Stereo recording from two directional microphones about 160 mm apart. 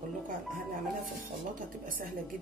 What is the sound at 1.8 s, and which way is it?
Speech, 60° right (ahead or behind).